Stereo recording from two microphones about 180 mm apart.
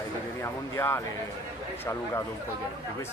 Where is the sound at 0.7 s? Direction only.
15° left (ahead or behind).